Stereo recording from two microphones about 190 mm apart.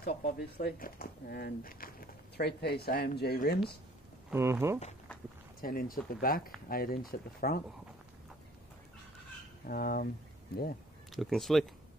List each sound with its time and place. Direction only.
0.1 s speech: 45° left (ahead or behind)
4.3 s speech: 15° right (ahead or behind)
5.6 s speech: 50° left (ahead or behind)
9.7 s speech: 50° left (ahead or behind)
11.1 s speech: centre (ahead or behind)